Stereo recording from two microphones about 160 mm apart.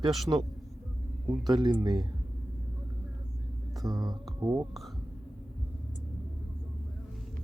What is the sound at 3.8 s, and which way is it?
Speech, 25° right (ahead or behind).